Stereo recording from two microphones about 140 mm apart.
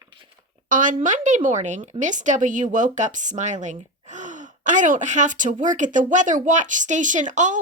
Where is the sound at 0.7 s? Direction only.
70° right (ahead or behind).